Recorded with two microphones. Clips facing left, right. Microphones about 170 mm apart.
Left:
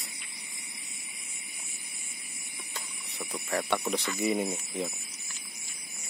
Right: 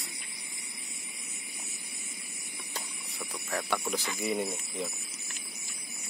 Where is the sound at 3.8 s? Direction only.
10° left (ahead or behind).